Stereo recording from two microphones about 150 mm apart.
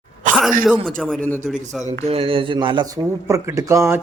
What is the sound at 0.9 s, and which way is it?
Speech, 5° left (ahead or behind).